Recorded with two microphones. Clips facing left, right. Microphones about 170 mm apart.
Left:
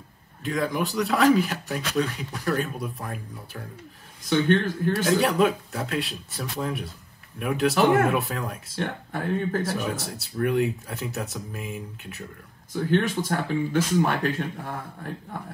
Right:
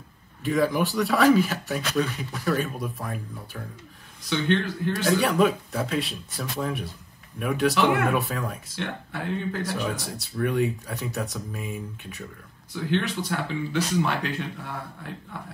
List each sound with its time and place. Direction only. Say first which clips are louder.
0.4 s speech: right 3 dB; centre (ahead or behind)
4.2 s speech: left 3 dB; 45° left (ahead or behind)
5.2 s speech: even; centre (ahead or behind)
7.7 s speech: left 6 dB; 40° left (ahead or behind)
8.1 s speech: even; centre (ahead or behind)
8.8 s speech: left 2 dB; 45° left (ahead or behind)
9.6 s speech: left 1 dB; centre (ahead or behind)
12.7 s speech: left 3 dB; 45° left (ahead or behind)